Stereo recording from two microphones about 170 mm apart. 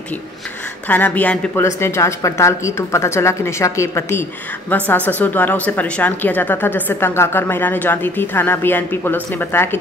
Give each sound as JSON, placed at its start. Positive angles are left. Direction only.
{"t": 0.8, "sound": "a woman's voice", "side_deg": 10}